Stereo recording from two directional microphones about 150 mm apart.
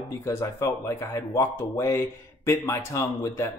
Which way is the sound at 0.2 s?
20° left (ahead or behind).